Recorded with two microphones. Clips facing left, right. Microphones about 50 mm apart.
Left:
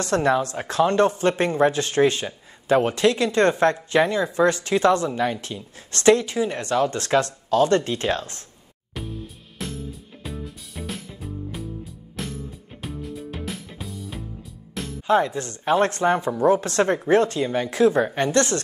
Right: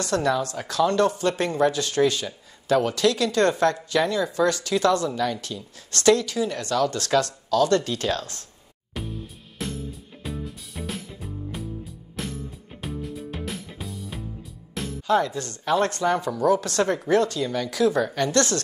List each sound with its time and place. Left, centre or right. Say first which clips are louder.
0.0 s speech: left 3 dB; left
8.9 s music: even; centre
15.0 s speech: left 2 dB; left